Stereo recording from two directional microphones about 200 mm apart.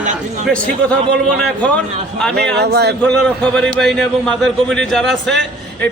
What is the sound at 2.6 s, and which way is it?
Speech, 55° right (ahead or behind).